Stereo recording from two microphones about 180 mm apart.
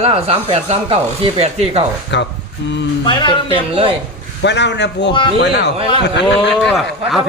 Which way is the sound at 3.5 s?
30° right (ahead or behind).